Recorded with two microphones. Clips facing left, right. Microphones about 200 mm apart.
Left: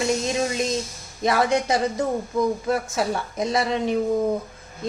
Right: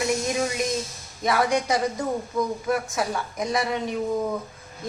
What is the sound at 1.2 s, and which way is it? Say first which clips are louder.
A woman's voice: left 2 dB; 25° left (ahead or behind).